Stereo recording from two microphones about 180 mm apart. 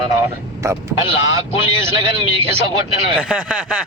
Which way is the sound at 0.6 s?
15° right (ahead or behind).